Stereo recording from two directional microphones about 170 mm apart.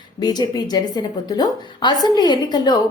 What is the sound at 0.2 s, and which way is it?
A woman's voice, 25° left (ahead or behind).